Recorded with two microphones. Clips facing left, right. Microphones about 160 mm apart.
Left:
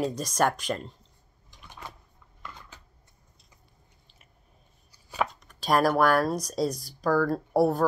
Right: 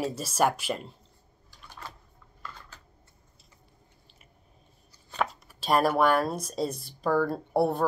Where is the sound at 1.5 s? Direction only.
20° left (ahead or behind).